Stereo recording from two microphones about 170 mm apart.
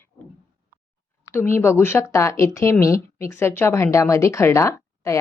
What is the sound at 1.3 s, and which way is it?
Speech, 15° left (ahead or behind).